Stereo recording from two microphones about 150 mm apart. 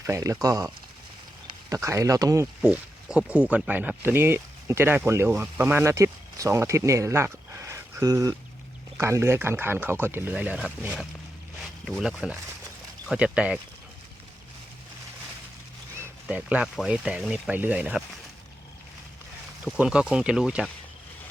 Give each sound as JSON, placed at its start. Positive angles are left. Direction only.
{"t": 0.0, "sound": "speech", "side_deg": -20}
{"t": 1.7, "sound": "speech", "side_deg": -20}
{"t": 2.6, "sound": "speech", "side_deg": -5}
{"t": 11.9, "sound": "speech", "side_deg": 0}
{"t": 16.2, "sound": "speech", "side_deg": -5}
{"t": 19.6, "sound": "speech", "side_deg": -5}